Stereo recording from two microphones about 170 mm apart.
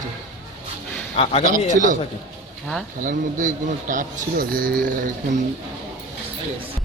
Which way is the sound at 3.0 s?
50° right (ahead or behind).